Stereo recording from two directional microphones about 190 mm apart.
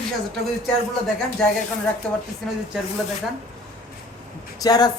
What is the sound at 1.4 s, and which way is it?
Speech, 5° left (ahead or behind).